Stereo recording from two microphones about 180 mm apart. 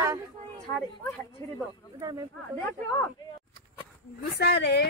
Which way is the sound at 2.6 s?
15° left (ahead or behind).